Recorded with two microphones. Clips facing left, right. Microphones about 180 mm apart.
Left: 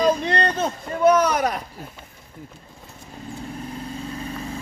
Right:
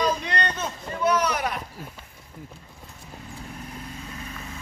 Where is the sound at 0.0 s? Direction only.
30° left (ahead or behind).